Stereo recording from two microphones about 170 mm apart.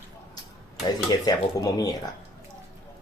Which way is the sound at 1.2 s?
25° left (ahead or behind).